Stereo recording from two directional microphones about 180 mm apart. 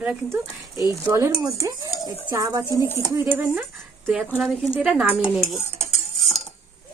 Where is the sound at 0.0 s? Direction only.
10° right (ahead or behind).